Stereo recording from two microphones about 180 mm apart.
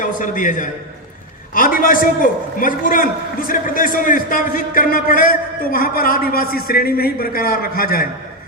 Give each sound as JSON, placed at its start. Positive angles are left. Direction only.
{"t": 0.0, "sound": "a man's voice", "side_deg": 45}